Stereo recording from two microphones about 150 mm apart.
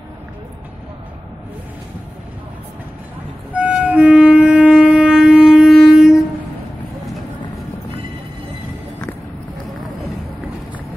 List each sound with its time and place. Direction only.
3.5 s wind instrument: 10° right (ahead or behind)
5.8 s train: 5° right (ahead or behind)